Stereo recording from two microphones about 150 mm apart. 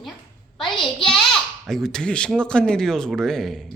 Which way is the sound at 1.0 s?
Centre (ahead or behind).